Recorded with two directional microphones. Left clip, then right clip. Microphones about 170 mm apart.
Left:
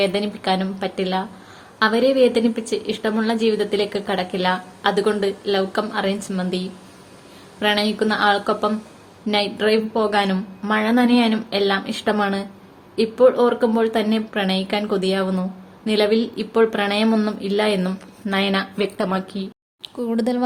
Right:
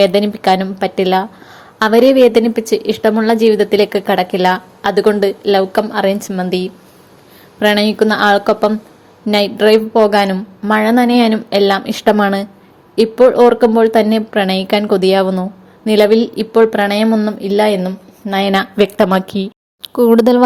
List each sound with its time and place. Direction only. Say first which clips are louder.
0.0 s a woman's voice: right 10 dB; 40° right (ahead or behind)
17.1 s speech: right 6 dB; 20° right (ahead or behind)
17.7 s a woman's voice: right 5 dB; 15° right (ahead or behind)
18.3 s a woman's voice: right 9 dB; 40° right (ahead or behind)